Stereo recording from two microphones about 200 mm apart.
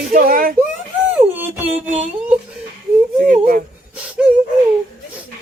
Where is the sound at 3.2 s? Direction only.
45° right (ahead or behind).